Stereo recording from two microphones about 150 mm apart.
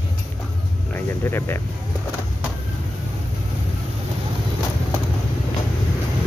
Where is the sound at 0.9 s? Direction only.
15° left (ahead or behind).